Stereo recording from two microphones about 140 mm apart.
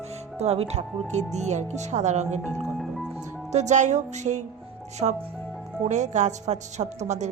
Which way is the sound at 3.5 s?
55° right (ahead or behind).